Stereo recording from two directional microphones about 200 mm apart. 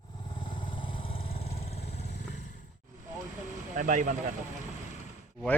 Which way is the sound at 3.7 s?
40° right (ahead or behind).